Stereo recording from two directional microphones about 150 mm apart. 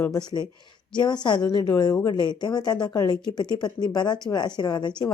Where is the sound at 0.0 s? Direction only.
25° left (ahead or behind).